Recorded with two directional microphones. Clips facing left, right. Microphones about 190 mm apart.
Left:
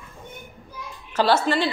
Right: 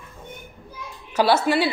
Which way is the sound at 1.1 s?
10° right (ahead or behind).